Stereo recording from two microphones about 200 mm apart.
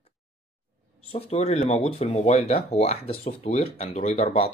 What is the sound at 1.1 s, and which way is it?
Speech, 30° left (ahead or behind).